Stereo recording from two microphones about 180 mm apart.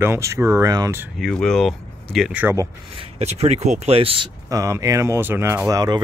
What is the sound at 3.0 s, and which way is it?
Speech, 35° right (ahead or behind).